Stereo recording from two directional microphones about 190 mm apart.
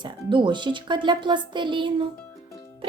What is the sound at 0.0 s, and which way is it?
Speech, 25° right (ahead or behind).